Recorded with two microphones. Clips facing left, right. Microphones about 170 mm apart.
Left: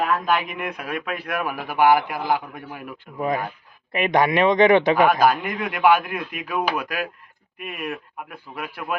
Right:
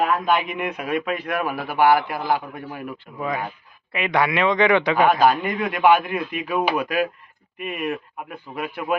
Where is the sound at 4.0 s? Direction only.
45° left (ahead or behind).